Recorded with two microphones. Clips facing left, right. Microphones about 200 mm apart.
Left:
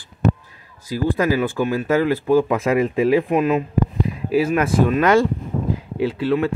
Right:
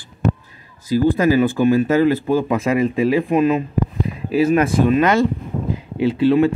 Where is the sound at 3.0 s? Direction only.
5° left (ahead or behind).